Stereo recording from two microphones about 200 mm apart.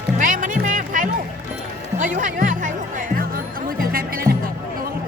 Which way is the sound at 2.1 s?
40° right (ahead or behind).